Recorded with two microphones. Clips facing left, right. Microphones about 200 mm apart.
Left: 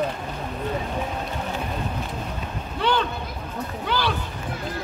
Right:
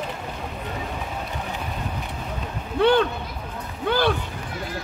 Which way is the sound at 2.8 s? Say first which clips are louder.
Right 6 dB; 55° right (ahead or behind).